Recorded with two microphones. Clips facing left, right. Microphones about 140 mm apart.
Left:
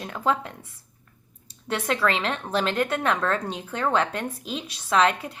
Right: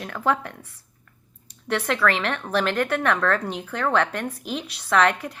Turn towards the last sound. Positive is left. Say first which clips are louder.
# right 1 dB
turn(degrees=25)  # may be behind; listen again after turning